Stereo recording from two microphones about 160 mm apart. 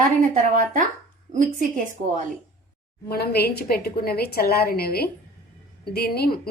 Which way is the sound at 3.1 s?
80° left.